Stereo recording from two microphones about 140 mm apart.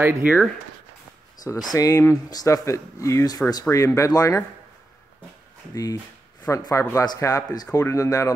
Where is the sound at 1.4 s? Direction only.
30° left (ahead or behind).